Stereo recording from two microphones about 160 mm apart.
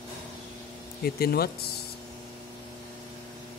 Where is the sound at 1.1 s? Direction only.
70° left (ahead or behind).